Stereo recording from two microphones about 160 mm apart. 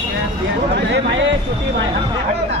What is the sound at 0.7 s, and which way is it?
Speech, 90° right.